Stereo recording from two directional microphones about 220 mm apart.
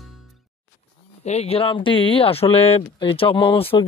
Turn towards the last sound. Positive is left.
turn(degrees=25)  # may be behind; listen again after turning